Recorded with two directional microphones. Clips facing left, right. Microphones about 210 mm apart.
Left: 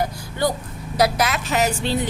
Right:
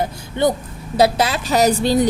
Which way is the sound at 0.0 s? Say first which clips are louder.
Right 4 dB; 25° right (ahead or behind).